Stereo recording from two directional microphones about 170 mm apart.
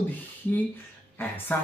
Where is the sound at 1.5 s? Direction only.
10° left (ahead or behind).